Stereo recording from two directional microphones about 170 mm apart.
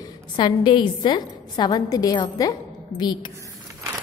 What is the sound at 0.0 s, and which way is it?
A woman's voice, 25° left (ahead or behind).